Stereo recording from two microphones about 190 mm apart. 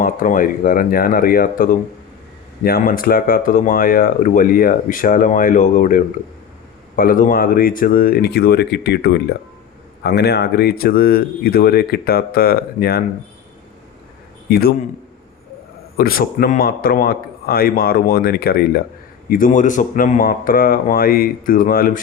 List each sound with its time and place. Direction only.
0.0 s speech: 45° left (ahead or behind)
14.5 s a man's voice: 55° left (ahead or behind)
16.0 s speech: 50° left (ahead or behind)
19.3 s speech: 45° left (ahead or behind)